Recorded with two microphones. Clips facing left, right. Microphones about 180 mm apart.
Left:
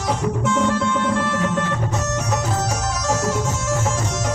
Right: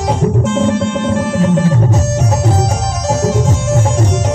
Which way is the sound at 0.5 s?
25° right (ahead or behind).